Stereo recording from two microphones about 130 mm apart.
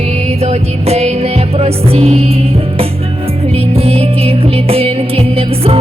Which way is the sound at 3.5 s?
50° right (ahead or behind).